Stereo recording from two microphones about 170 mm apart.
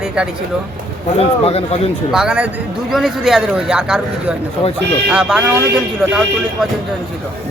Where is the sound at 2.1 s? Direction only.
5° right (ahead or behind).